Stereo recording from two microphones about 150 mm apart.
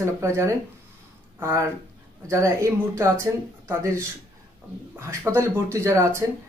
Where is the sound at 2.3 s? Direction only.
20° right (ahead or behind).